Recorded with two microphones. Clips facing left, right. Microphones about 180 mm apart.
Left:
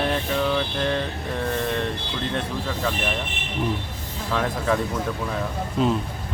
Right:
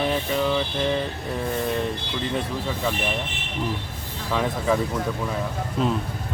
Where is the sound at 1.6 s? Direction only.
5° right (ahead or behind).